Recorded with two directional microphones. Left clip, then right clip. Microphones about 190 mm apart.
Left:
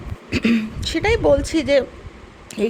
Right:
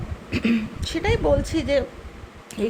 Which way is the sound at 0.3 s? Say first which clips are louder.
Left 4 dB; 25° left (ahead or behind).